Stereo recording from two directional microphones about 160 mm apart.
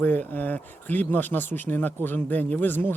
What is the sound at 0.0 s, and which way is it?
Speech, 10° left (ahead or behind).